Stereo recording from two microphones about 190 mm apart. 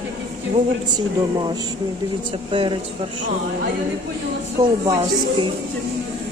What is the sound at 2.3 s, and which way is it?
Speech, 25° right (ahead or behind).